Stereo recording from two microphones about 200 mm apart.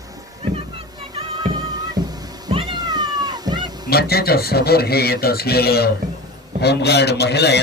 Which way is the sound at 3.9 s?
50° left (ahead or behind).